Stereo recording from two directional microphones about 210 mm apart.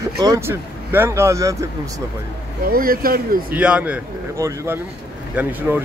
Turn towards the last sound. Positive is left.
turn(degrees=-10)  # may be behind; listen again after turning